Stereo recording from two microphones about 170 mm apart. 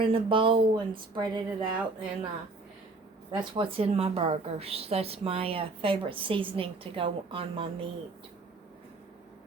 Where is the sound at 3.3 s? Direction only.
30° right (ahead or behind).